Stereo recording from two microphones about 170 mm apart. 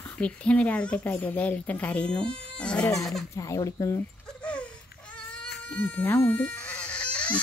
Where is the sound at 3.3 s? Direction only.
20° left (ahead or behind).